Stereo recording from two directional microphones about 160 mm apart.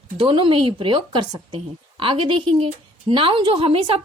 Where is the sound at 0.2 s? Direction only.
35° right (ahead or behind).